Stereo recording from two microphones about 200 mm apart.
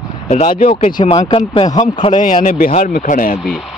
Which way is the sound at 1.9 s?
40° left (ahead or behind).